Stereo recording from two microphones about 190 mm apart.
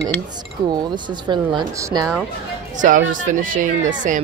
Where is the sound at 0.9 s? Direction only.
25° right (ahead or behind).